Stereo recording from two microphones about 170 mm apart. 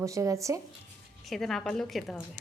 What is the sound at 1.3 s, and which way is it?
Speech, centre (ahead or behind).